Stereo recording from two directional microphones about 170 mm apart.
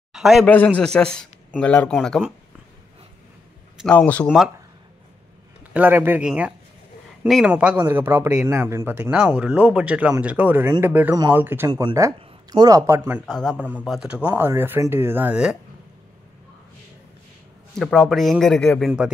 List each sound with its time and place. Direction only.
0.1 s a man's voice: centre (ahead or behind)
0.5 s a man's voice: 10° left (ahead or behind)
3.8 s speech: 10° left (ahead or behind)
5.7 s speech: 10° right (ahead or behind)
13.2 s a man's voice: centre (ahead or behind)
17.7 s a man's voice: 5° left (ahead or behind)